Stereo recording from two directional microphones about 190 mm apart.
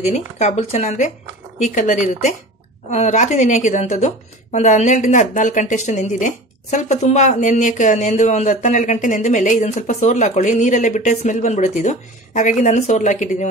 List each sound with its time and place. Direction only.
0.1 s a woman's voice: 35° left (ahead or behind)